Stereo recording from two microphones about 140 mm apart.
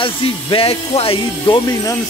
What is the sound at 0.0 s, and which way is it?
Speech, 40° left (ahead or behind).